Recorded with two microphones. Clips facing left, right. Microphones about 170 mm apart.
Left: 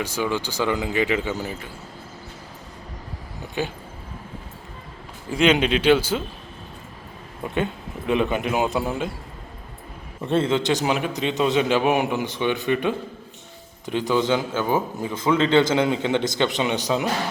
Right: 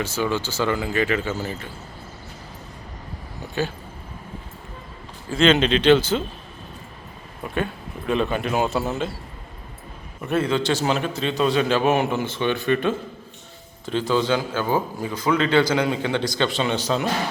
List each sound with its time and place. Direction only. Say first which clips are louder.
0.0 s a man's voice: right 1 dB; 15° left (ahead or behind)
5.3 s a man's voice: right 1 dB; 10° left (ahead or behind)
7.4 s a man's voice: left 1 dB; 20° left (ahead or behind)
10.2 s a man's voice: left 1 dB; 25° left (ahead or behind)